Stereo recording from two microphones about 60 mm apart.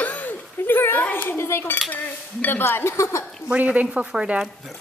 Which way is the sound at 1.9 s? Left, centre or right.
Left.